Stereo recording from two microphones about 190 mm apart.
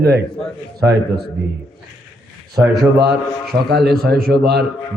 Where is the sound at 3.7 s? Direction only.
55° right (ahead or behind).